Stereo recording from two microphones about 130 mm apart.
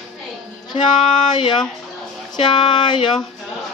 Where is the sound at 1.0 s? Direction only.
40° left (ahead or behind).